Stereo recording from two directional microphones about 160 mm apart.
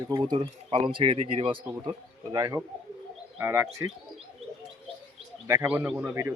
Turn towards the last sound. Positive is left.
turn(degrees=-15)  # may be behind; listen again after turning